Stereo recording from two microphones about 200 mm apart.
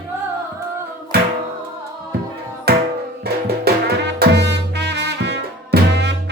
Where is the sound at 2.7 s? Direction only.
50° right (ahead or behind).